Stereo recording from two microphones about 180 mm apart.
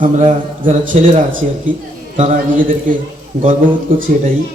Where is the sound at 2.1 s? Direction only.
45° right (ahead or behind).